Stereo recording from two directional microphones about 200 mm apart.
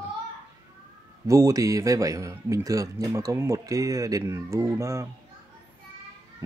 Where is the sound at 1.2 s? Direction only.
15° right (ahead or behind).